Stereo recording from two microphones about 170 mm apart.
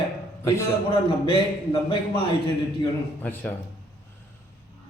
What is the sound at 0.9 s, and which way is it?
A man's voice, 30° left (ahead or behind).